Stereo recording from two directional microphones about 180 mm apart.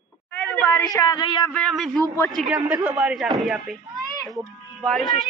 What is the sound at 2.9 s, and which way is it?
Speech, 5° right (ahead or behind).